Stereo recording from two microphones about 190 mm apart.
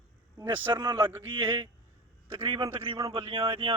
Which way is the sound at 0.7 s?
20° right (ahead or behind).